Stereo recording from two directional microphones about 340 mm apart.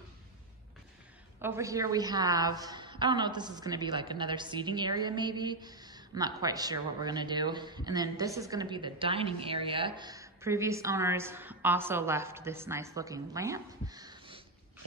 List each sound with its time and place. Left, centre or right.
1.4 s a woman's voice: centre